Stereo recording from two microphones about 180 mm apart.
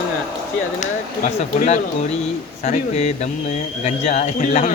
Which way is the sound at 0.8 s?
45° left (ahead or behind).